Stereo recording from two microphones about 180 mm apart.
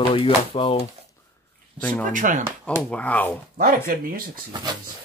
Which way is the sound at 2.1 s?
45° right (ahead or behind).